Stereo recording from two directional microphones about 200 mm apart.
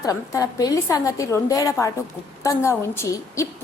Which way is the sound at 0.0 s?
15° left (ahead or behind).